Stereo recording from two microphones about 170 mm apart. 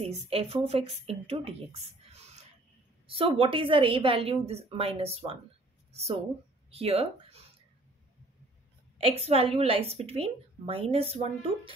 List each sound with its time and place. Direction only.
0.0 s a woman's voice: 35° right (ahead or behind)
6.7 s speech: 35° right (ahead or behind)
9.0 s a woman's voice: 35° right (ahead or behind)